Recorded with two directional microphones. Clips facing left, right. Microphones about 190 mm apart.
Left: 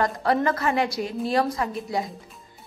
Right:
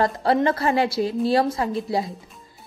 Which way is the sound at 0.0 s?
30° right (ahead or behind).